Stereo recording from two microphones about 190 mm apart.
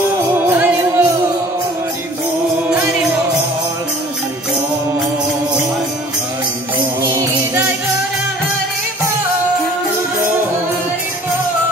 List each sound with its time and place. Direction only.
0.5 s music: 10° right (ahead or behind)
7.1 s music: 15° right (ahead or behind)